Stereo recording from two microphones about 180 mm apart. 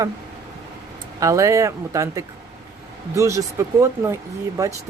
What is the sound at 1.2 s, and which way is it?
Speech, 15° right (ahead or behind).